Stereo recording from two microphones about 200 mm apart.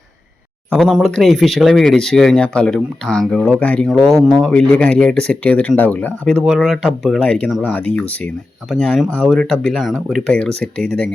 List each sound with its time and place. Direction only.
0.7 s speech: centre (ahead or behind)